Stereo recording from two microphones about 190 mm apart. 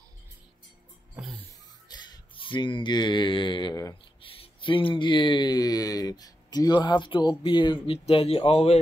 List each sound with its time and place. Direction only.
1.9 s speech: 20° left (ahead or behind)
4.4 s a sound: 25° left (ahead or behind)
4.9 s speech: 25° left (ahead or behind)